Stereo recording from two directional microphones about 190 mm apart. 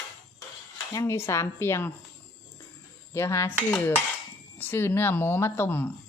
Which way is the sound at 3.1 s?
15° left (ahead or behind).